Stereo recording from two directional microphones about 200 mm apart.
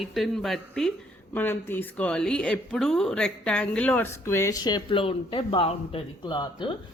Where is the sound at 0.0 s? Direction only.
Centre (ahead or behind).